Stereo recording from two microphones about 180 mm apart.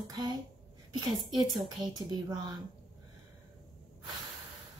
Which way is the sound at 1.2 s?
Centre (ahead or behind).